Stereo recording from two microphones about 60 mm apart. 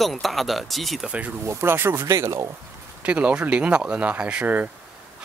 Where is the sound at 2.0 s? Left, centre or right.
Right.